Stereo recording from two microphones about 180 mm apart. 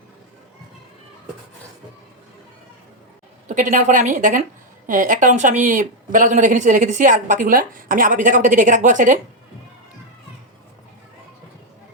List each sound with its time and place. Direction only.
3.5 s a woman's voice: 45° right (ahead or behind)